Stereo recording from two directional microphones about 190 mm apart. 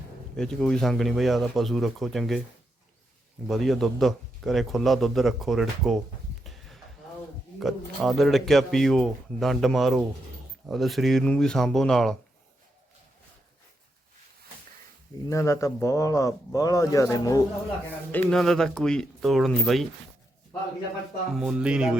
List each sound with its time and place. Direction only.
0.3 s speech: 5° left (ahead or behind)
3.4 s speech: centre (ahead or behind)
6.4 s a sound: centre (ahead or behind)
7.6 s speech: centre (ahead or behind)
15.3 s speech: 15° left (ahead or behind)
18.1 s speech: 5° left (ahead or behind)
21.3 s speech: 5° right (ahead or behind)